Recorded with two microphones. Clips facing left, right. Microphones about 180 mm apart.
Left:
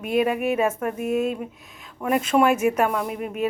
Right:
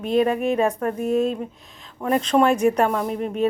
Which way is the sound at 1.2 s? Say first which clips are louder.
Right 2 dB; 10° left (ahead or behind).